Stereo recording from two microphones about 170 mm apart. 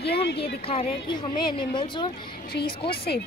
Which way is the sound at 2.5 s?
65° left (ahead or behind).